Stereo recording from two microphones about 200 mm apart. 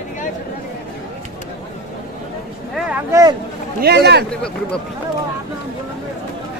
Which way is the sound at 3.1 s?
20° right (ahead or behind).